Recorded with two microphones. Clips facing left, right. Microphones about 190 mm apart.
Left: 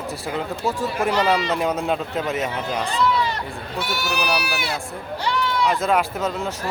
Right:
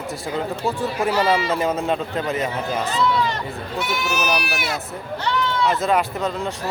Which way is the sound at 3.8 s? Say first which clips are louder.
Right 1 dB; 35° left (ahead or behind).